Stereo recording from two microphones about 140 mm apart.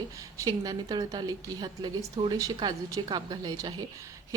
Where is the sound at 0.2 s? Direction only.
25° right (ahead or behind).